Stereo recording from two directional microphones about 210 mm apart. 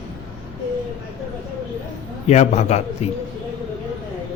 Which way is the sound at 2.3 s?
30° left (ahead or behind).